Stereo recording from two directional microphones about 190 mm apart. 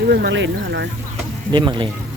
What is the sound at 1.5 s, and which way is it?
Speech, 25° right (ahead or behind).